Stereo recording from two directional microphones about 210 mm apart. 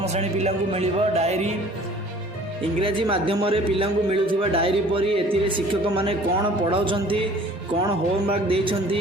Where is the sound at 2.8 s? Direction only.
25° right (ahead or behind).